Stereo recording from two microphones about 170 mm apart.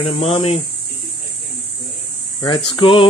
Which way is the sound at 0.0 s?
35° left (ahead or behind).